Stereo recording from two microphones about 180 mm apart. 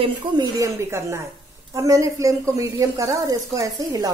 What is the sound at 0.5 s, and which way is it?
Speech, 15° right (ahead or behind).